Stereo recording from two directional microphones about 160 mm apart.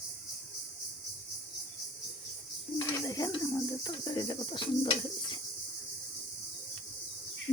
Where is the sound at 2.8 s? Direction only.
20° left (ahead or behind).